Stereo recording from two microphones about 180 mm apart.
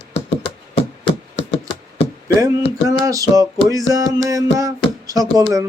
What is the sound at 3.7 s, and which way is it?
Music, 20° right (ahead or behind).